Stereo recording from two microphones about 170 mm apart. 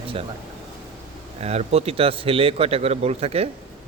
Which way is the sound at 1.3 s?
40° right (ahead or behind).